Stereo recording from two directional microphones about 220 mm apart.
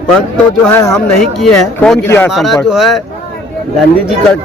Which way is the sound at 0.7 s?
15° left (ahead or behind).